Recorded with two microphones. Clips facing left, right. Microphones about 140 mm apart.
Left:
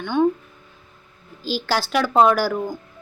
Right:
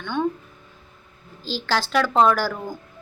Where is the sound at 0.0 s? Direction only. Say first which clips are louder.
Left 6 dB; 10° left (ahead or behind).